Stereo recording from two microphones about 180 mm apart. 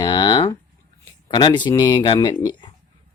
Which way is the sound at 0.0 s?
25° left (ahead or behind).